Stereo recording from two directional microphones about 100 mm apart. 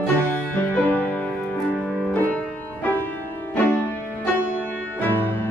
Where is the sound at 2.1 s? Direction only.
15° left (ahead or behind).